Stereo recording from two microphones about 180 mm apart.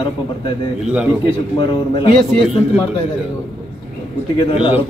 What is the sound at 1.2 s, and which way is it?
Speech, 30° left (ahead or behind).